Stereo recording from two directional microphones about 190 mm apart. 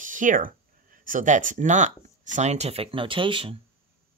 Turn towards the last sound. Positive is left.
turn(degrees=-25)  # may be behind; listen again after turning